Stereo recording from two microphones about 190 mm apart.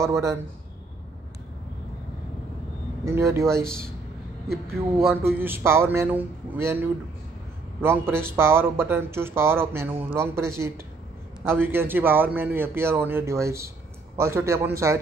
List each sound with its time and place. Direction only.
0.0 s speech: 15° right (ahead or behind)
3.1 s speech: 15° right (ahead or behind)
5.1 s speech: 10° right (ahead or behind)